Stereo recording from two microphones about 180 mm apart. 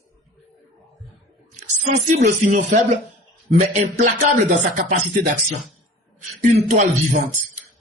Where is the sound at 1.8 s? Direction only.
40° right (ahead or behind).